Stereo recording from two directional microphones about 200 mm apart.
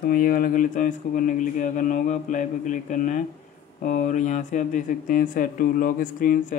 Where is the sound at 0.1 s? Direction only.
45° left (ahead or behind).